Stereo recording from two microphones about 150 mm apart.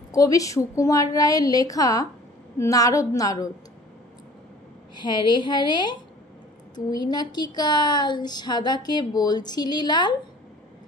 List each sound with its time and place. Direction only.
0.1 s speech: 25° left (ahead or behind)
4.9 s speech: 30° left (ahead or behind)